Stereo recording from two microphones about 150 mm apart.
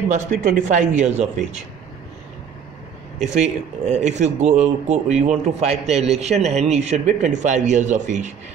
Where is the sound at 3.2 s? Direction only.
50° right (ahead or behind).